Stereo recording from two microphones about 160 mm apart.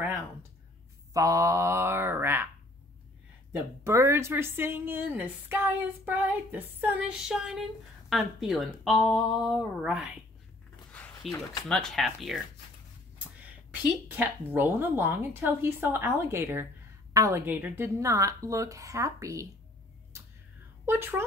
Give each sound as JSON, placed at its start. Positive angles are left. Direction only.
{"t": 1.1, "sound": "speech", "side_deg": -20}
{"t": 3.8, "sound": "a woman's voice", "side_deg": -15}
{"t": 10.9, "sound": "zipper", "side_deg": 10}
{"t": 11.7, "sound": "speech", "side_deg": 0}
{"t": 14.1, "sound": "a woman's voice", "side_deg": -10}
{"t": 20.1, "sound": "whispering", "side_deg": -15}
{"t": 20.8, "sound": "a woman's voice", "side_deg": -15}